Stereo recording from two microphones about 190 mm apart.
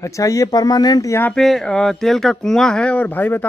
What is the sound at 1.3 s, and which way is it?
Speech, centre (ahead or behind).